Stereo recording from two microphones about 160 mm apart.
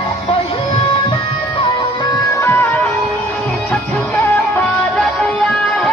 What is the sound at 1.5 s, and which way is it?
Music, 30° left (ahead or behind).